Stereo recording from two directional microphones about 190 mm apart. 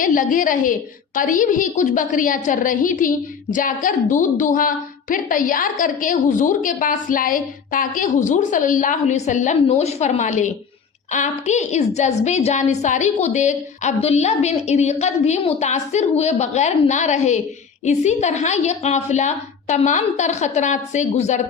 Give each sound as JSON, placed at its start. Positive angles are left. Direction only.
{"t": 0.0, "sound": "a woman's voice", "side_deg": 45}